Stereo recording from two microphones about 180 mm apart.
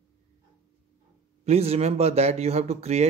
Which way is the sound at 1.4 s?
35° right (ahead or behind).